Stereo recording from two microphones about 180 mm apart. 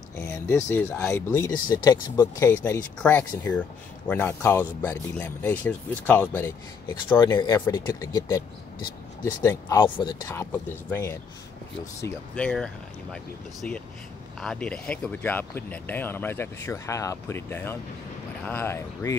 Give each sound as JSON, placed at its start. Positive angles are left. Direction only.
{"t": 0.2, "sound": "speech", "side_deg": 15}
{"t": 7.2, "sound": "speech", "side_deg": 25}
{"t": 9.8, "sound": "speech", "side_deg": 25}
{"t": 10.2, "sound": "speech", "side_deg": 15}